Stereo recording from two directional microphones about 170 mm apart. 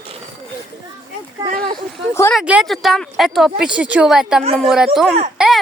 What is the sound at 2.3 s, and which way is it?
Speech, 5° right (ahead or behind).